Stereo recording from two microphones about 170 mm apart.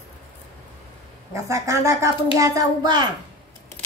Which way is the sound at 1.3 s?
15° right (ahead or behind).